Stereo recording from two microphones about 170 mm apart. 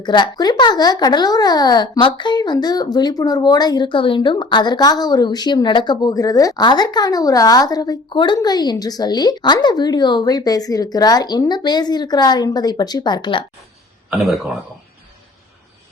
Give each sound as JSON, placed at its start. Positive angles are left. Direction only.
{"t": 0.0, "sound": "speech", "side_deg": 25}
{"t": 14.1, "sound": "speech", "side_deg": 0}